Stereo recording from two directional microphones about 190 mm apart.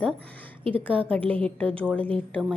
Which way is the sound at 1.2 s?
10° left (ahead or behind).